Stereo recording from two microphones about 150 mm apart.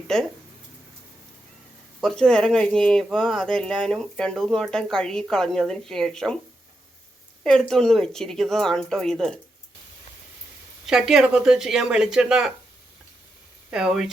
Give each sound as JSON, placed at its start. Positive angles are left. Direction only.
{"t": 2.0, "sound": "speech", "side_deg": 5}
{"t": 7.4, "sound": "speech", "side_deg": 5}
{"t": 10.8, "sound": "speech", "side_deg": -5}
{"t": 13.7, "sound": "speech", "side_deg": -5}